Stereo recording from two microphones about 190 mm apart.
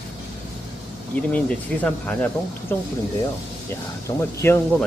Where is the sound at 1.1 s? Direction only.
5° left (ahead or behind).